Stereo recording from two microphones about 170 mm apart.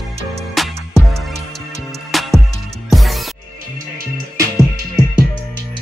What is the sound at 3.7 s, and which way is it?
Music, 60° right (ahead or behind).